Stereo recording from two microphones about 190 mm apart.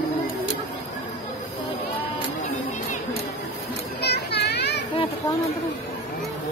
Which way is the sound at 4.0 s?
60° left (ahead or behind).